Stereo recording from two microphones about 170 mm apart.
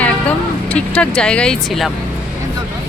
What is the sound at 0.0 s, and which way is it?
Speech, 10° left (ahead or behind).